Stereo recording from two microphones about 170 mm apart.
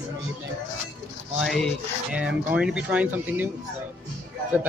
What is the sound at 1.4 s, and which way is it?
Speech, centre (ahead or behind).